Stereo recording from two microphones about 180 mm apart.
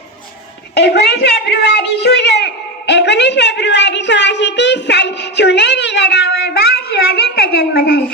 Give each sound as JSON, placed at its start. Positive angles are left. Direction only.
{"t": 0.7, "sound": "a woman's voice", "side_deg": 65}